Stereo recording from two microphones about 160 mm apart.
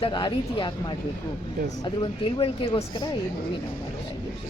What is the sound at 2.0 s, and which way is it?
Speech, 30° left (ahead or behind).